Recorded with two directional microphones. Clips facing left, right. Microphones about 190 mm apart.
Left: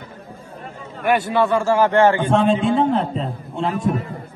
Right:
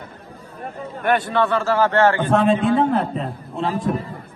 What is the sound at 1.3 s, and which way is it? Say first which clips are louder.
A man's voice: left 2 dB; 15° left (ahead or behind).